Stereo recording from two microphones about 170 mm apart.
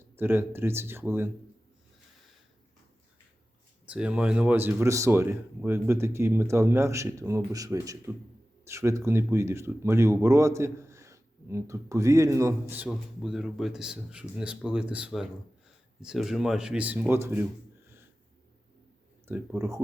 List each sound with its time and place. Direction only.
0.2 s speech: 15° right (ahead or behind)
3.8 s speech: 5° right (ahead or behind)
12.9 s speech: 5° right (ahead or behind)
19.3 s speech: 15° right (ahead or behind)